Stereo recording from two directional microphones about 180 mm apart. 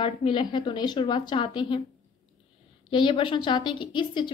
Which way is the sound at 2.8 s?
25° left (ahead or behind).